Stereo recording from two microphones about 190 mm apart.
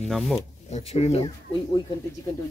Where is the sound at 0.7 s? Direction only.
35° left (ahead or behind).